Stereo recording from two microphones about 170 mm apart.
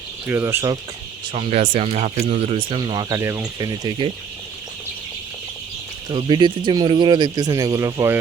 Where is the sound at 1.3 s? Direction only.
35° right (ahead or behind).